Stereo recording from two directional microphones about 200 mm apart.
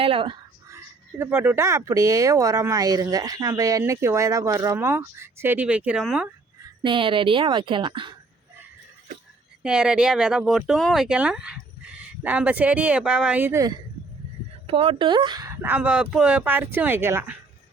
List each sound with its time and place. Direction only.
0.0 s speech: 25° right (ahead or behind)
1.2 s speech: 10° right (ahead or behind)
6.8 s speech: 25° right (ahead or behind)
9.6 s speech: 5° right (ahead or behind)
14.7 s speech: 25° right (ahead or behind)